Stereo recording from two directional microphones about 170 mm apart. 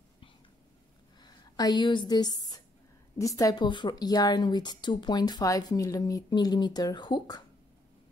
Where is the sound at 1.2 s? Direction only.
25° left (ahead or behind).